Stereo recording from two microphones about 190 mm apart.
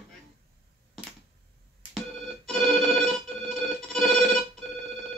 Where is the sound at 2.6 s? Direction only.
Centre (ahead or behind).